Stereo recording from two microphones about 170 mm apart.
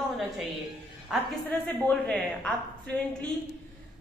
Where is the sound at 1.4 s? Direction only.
5° left (ahead or behind).